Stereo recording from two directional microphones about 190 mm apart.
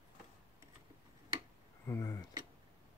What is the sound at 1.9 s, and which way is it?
Speech, 15° left (ahead or behind).